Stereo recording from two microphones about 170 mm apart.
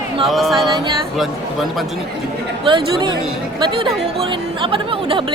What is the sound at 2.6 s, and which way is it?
Speech, 30° right (ahead or behind).